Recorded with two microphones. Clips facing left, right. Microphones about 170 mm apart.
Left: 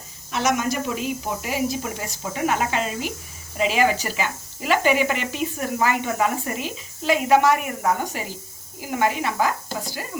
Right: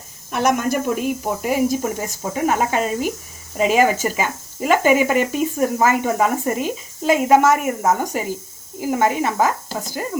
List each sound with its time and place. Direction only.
0.3 s speech: 50° right (ahead or behind)